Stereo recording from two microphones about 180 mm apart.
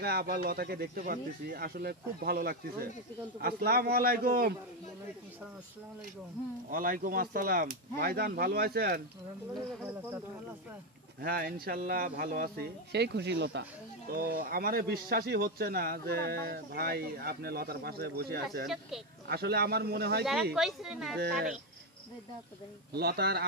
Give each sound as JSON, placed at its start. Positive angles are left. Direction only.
{"t": 0.0, "sound": "speech", "side_deg": -60}
{"t": 6.7, "sound": "speech", "side_deg": -50}
{"t": 11.1, "sound": "speech", "side_deg": -55}
{"t": 12.9, "sound": "speech", "side_deg": -70}
{"t": 20.5, "sound": "speech", "side_deg": 0}
{"t": 22.9, "sound": "speech", "side_deg": -60}